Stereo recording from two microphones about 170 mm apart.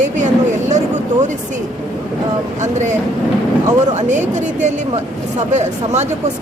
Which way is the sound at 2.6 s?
45° right (ahead or behind).